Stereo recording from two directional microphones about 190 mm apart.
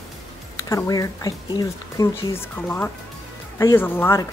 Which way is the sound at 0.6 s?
15° left (ahead or behind).